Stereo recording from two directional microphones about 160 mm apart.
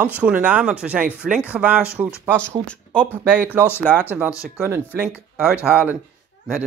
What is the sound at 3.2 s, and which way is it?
Speech, 10° right (ahead or behind).